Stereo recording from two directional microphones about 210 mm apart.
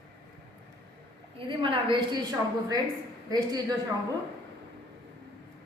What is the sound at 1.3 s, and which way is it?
A woman's voice, 25° right (ahead or behind).